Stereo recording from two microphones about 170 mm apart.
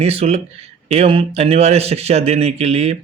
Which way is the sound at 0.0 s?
35° right (ahead or behind).